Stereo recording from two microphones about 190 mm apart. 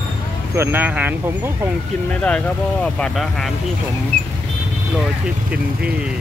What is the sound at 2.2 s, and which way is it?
Speech, 5° left (ahead or behind).